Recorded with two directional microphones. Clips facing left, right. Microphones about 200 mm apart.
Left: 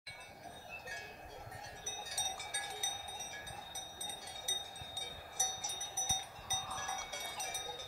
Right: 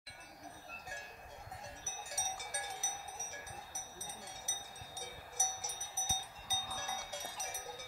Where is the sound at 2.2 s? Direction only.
20° right (ahead or behind).